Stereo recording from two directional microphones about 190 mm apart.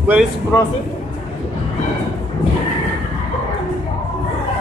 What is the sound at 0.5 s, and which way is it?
Speech, 15° left (ahead or behind).